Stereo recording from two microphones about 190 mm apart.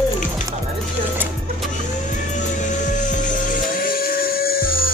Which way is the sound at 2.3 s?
40° left (ahead or behind).